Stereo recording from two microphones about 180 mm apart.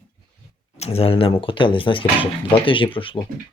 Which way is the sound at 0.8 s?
35° left (ahead or behind).